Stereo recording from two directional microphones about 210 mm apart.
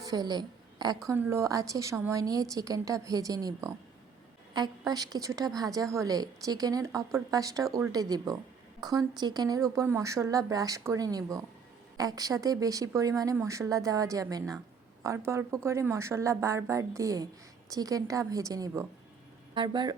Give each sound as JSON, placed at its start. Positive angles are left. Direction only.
{"t": 0.0, "sound": "a woman's voice", "side_deg": -20}